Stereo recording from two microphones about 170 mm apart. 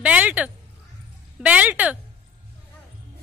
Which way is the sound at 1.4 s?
10° right (ahead or behind).